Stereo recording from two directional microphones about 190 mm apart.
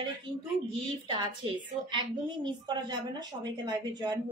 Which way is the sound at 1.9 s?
25° right (ahead or behind).